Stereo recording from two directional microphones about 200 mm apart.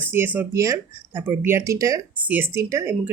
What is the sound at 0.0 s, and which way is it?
Speech, 10° right (ahead or behind).